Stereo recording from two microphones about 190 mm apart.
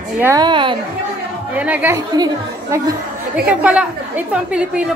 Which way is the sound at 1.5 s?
5° right (ahead or behind).